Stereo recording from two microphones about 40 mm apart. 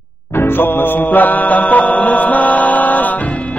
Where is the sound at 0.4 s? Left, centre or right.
Left.